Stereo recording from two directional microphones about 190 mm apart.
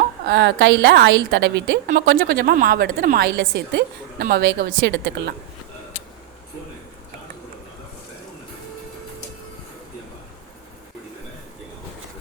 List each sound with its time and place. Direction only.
0.3 s a woman's voice: 65° right (ahead or behind)
1.9 s a woman's voice: 50° right (ahead or behind)